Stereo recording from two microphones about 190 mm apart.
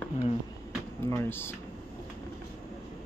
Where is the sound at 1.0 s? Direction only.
10° left (ahead or behind).